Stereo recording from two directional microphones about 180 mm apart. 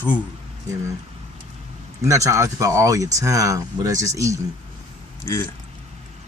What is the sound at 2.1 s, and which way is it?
Speech, 15° right (ahead or behind).